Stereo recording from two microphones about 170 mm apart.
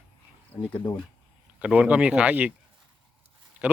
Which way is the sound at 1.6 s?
5° right (ahead or behind).